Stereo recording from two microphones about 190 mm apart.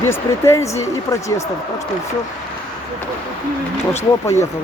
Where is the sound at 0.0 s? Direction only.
15° left (ahead or behind).